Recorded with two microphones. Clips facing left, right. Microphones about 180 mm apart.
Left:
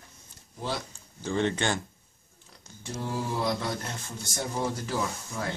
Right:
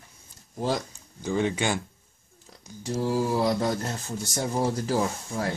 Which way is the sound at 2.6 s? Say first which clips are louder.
Right 8 dB; 35° right (ahead or behind).